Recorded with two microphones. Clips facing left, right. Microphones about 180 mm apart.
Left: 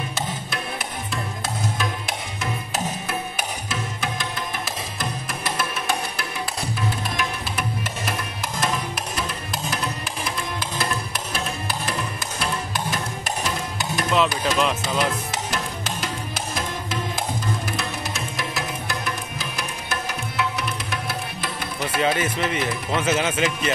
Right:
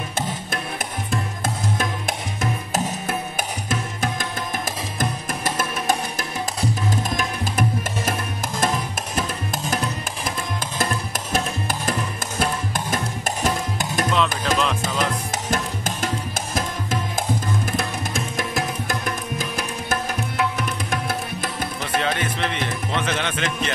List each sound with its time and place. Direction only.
2.7 s music: 50° right (ahead or behind)
5.4 s music: 45° right (ahead or behind)
11.3 s music: 45° right (ahead or behind)
14.1 s music: 5° left (ahead or behind)
14.8 s music: 45° right (ahead or behind)
21.9 s speech: 5° left (ahead or behind)